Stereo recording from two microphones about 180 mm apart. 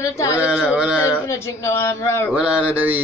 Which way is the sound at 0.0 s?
15° left (ahead or behind).